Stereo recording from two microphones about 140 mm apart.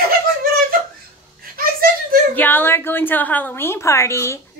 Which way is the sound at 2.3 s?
15° left (ahead or behind).